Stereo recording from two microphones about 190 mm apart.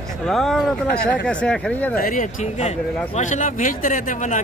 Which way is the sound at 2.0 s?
45° left (ahead or behind).